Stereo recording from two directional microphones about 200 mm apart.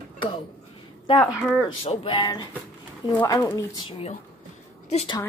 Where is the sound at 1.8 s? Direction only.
25° left (ahead or behind).